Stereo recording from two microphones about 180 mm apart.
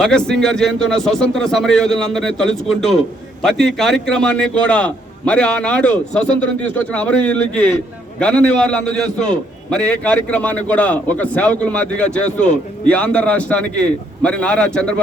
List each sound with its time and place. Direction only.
0.0 s a man's voice: 5° left (ahead or behind)